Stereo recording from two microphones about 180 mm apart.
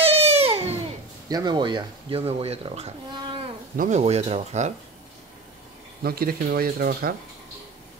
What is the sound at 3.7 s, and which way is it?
Speech, 50° right (ahead or behind).